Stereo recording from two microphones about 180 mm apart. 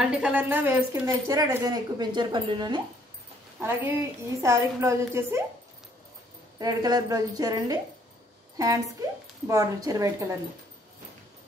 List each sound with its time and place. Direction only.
0.0 s a woman's voice: 5° right (ahead or behind); by 2.8 s 25° right (ahead or behind)
3.5 s a woman's voice: 10° right (ahead or behind)
6.6 s a woman's voice: 20° right (ahead or behind)